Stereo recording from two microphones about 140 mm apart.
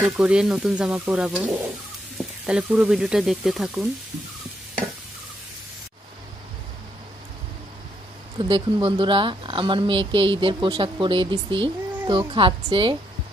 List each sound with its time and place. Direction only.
0.0 s speech: 5° right (ahead or behind)
8.4 s speech: 35° right (ahead or behind)